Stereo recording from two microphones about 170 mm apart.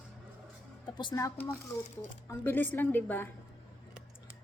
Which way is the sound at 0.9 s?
20° left (ahead or behind).